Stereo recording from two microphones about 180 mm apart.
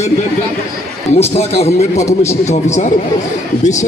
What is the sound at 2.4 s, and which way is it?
Speech, 40° left (ahead or behind).